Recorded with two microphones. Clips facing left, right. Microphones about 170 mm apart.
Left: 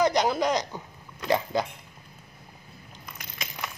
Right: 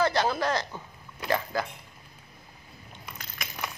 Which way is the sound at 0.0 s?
15° left (ahead or behind).